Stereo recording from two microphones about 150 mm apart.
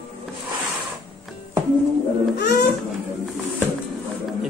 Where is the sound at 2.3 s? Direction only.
90° left.